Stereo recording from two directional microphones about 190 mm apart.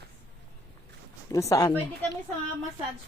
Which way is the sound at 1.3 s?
15° left (ahead or behind).